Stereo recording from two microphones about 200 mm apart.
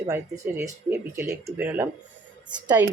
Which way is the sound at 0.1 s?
15° right (ahead or behind).